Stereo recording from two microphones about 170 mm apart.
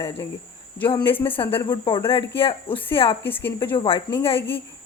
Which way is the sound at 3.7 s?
30° left (ahead or behind).